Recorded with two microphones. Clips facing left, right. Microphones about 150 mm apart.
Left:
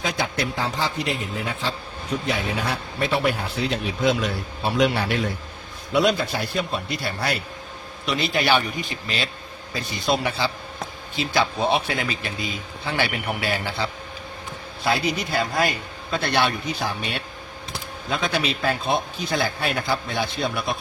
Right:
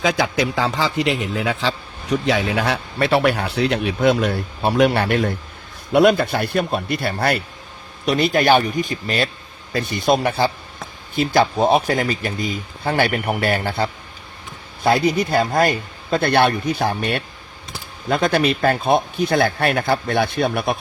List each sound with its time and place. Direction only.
0.0 s a man's voice: 90° right; by 20.7 s 55° right (ahead or behind)